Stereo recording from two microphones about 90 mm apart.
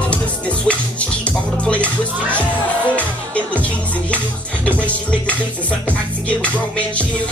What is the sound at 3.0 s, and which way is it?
Music, 15° left (ahead or behind).